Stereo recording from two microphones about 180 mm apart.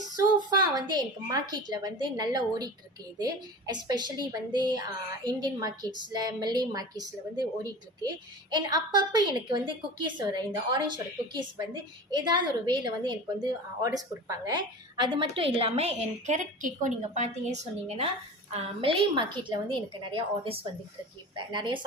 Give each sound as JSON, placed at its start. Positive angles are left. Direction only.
{"t": 0.0, "sound": "a woman's voice", "side_deg": -25}